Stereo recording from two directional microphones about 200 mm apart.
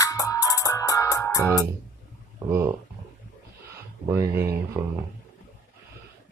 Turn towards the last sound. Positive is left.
turn(degrees=-15)  # may be behind; listen again after turning